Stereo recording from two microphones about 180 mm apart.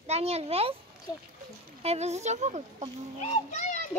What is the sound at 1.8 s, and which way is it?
Speech, 35° right (ahead or behind).